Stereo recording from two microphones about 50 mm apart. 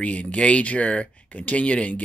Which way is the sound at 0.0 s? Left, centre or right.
Left.